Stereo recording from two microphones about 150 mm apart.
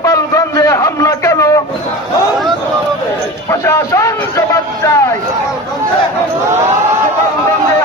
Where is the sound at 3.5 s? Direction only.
20° left (ahead or behind).